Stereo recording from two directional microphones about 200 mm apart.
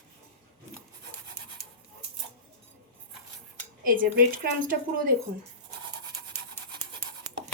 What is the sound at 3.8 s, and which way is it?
A woman's voice, 45° right (ahead or behind).